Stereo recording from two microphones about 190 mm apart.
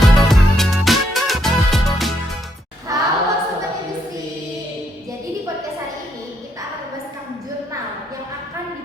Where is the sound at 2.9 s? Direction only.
15° right (ahead or behind).